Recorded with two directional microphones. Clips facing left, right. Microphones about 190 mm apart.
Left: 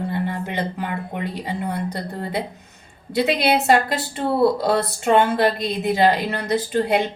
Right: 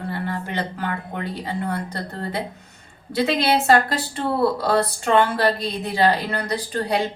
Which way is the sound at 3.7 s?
20° left (ahead or behind).